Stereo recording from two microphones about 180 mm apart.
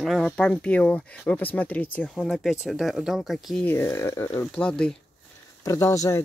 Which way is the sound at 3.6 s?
15° left (ahead or behind).